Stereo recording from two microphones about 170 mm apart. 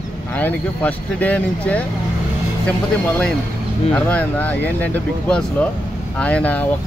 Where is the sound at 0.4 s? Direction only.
10° left (ahead or behind).